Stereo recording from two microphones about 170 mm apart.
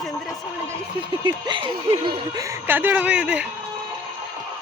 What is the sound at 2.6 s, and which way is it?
Speech, 10° right (ahead or behind).